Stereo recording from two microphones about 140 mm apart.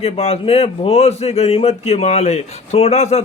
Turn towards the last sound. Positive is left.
turn(degrees=55)  # may be behind; listen again after turning